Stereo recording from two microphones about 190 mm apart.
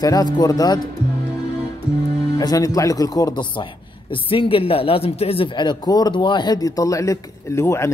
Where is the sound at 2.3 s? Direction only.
20° left (ahead or behind).